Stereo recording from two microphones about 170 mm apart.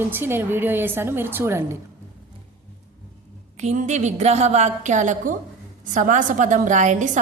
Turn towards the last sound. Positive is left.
turn(degrees=-45)  # may be behind; listen again after turning